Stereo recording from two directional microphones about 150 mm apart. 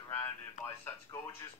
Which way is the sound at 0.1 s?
15° left (ahead or behind).